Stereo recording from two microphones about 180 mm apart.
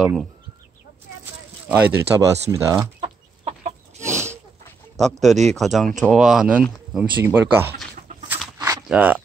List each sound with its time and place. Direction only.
0.0 s speech: centre (ahead or behind)
1.7 s speech: 10° right (ahead or behind)
3.0 s chicken: 40° right (ahead or behind)
4.0 s a sound: 15° right (ahead or behind)
5.2 s speech: centre (ahead or behind)
8.8 s speech: 10° right (ahead or behind)